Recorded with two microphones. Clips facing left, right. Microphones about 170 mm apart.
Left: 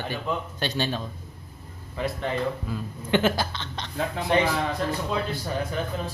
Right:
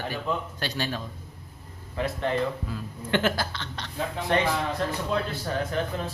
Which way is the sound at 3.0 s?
20° left (ahead or behind).